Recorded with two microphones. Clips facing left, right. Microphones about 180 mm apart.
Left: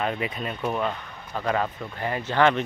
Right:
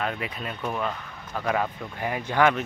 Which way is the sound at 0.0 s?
Centre (ahead or behind).